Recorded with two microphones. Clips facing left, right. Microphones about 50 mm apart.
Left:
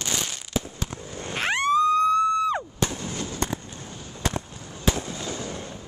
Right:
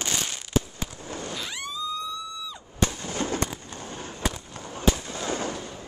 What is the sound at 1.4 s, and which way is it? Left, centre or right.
Police car, left.